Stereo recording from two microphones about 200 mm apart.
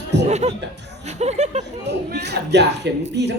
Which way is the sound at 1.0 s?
35° right (ahead or behind).